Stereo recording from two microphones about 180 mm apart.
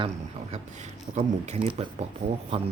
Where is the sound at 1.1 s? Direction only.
40° right (ahead or behind).